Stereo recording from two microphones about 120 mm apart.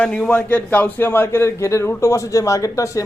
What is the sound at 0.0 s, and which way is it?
Speech, 10° left (ahead or behind).